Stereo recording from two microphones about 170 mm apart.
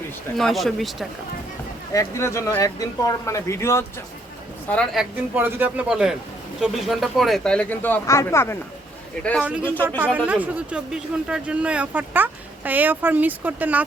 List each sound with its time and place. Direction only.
0.3 s speech: centre (ahead or behind)
1.9 s speech: 20° left (ahead or behind)
4.7 s speech: 5° left (ahead or behind)
5.3 s speech: 10° right (ahead or behind); by 8.5 s 15° left (ahead or behind)
9.4 s speech: 5° right (ahead or behind)